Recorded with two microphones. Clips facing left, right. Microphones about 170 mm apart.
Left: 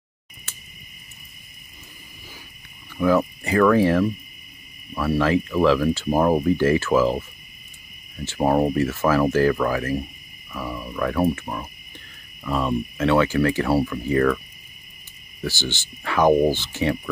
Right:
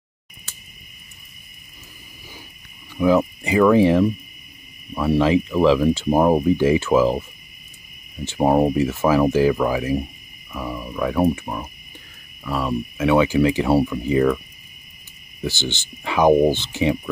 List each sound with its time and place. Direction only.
3.0 s speech: 15° right (ahead or behind)
12.4 s speech: centre (ahead or behind)
15.4 s speech: 20° right (ahead or behind)